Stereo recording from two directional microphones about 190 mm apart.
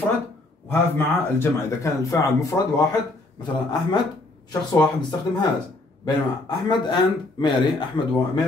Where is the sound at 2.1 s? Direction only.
15° left (ahead or behind).